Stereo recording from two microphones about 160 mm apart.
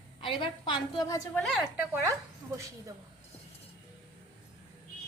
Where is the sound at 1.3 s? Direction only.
Centre (ahead or behind).